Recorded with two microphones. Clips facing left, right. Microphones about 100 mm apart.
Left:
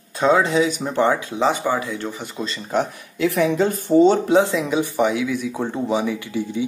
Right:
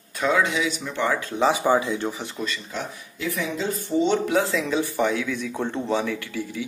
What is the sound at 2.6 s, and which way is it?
Speech, 50° left (ahead or behind).